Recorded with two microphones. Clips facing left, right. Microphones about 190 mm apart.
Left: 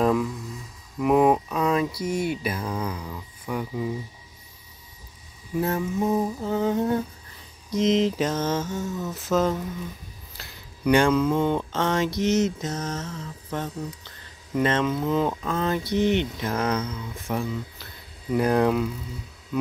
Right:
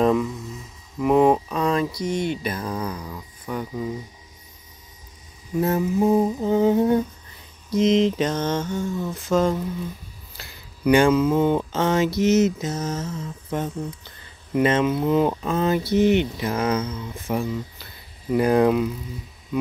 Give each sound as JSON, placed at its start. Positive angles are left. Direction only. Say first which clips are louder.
{"t": 0.0, "sound": "speech", "louder": "right 2 dB", "side_deg": 0}
{"t": 5.6, "sound": "speech", "louder": "right 4 dB", "side_deg": -5}
{"t": 6.0, "sound": "humming", "louder": "right 6 dB", "side_deg": -25}
{"t": 7.7, "sound": "speech", "louder": "right 3 dB", "side_deg": 0}